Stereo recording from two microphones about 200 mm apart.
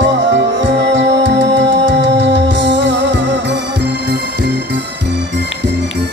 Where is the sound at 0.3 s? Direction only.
65° right (ahead or behind).